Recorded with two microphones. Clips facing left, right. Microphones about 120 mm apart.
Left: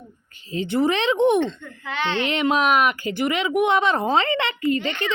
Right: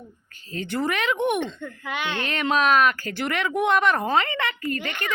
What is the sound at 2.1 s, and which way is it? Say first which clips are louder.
Speech: left 3 dB; 20° left (ahead or behind).